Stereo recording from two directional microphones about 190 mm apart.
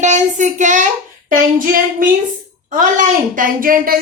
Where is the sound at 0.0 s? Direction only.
40° right (ahead or behind).